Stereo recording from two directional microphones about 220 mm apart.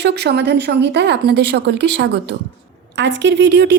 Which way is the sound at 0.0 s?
50° right (ahead or behind).